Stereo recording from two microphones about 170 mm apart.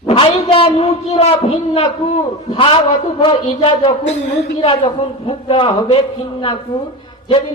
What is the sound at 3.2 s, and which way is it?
A man's voice, 30° left (ahead or behind).